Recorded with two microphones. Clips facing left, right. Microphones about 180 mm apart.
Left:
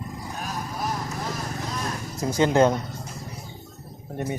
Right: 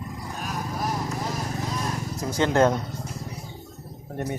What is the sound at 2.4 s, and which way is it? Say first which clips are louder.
Speech: left 1 dB; 10° left (ahead or behind).